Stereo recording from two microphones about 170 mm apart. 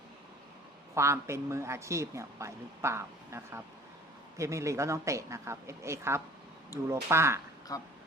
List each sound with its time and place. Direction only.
0.9 s speech: 15° right (ahead or behind)
7.7 s speech: 20° left (ahead or behind)